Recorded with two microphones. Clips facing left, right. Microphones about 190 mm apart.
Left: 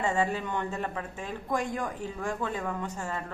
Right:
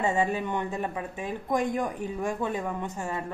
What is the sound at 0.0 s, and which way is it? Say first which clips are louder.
Speech: right 2 dB; 15° right (ahead or behind).